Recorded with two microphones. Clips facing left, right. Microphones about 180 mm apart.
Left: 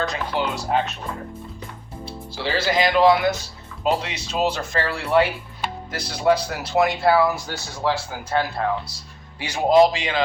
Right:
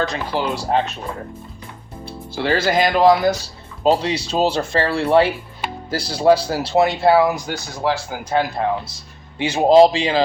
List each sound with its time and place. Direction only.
0.0 s speech: 30° right (ahead or behind)
2.0 s speech: 55° right (ahead or behind); by 10.2 s 30° right (ahead or behind)